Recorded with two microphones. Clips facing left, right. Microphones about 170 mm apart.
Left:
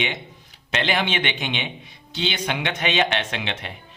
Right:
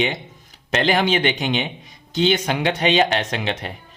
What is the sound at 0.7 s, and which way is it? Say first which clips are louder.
A man's voice: right 5 dB; 40° right (ahead or behind).